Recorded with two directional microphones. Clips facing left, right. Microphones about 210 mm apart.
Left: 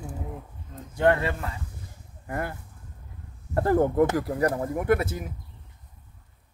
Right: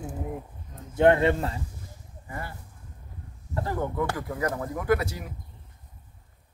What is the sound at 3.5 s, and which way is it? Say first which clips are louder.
Speech: left 8 dB; 50° left (ahead or behind).